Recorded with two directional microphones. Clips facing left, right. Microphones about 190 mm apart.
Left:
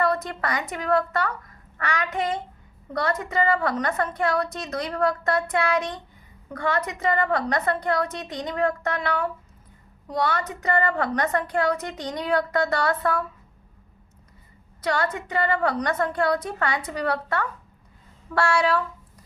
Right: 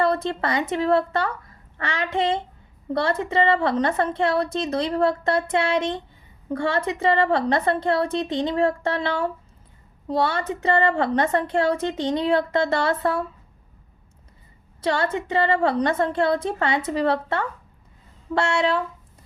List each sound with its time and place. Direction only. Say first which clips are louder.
0.0 s a woman's voice: right 3 dB; 25° right (ahead or behind)
14.8 s a woman's voice: right 2 dB; 25° right (ahead or behind)